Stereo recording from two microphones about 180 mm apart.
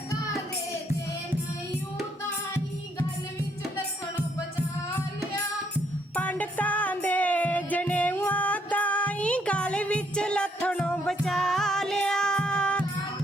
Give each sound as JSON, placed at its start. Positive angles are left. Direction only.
{"t": 6.1, "sound": "music", "side_deg": 10}